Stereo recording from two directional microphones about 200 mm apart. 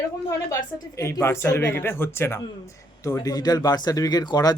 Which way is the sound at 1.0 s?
15° left (ahead or behind).